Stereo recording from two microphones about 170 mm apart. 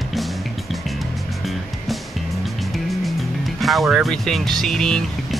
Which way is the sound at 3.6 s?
Centre (ahead or behind).